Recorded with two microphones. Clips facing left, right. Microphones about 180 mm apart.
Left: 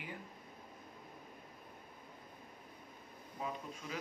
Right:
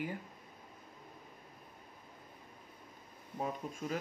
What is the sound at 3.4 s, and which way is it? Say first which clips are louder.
Speech: right 5 dB; 45° right (ahead or behind).